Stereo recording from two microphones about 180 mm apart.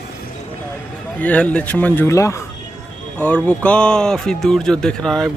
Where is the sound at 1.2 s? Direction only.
10° left (ahead or behind).